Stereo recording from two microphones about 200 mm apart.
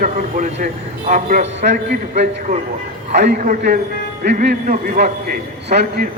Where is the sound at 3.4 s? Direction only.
45° right (ahead or behind).